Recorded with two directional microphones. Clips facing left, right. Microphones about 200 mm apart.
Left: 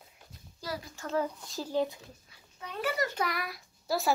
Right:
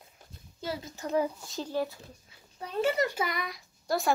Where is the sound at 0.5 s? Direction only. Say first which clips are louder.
Right 3 dB; 25° right (ahead or behind).